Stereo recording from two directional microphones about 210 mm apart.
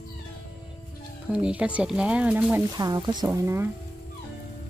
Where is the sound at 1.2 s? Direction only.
5° right (ahead or behind).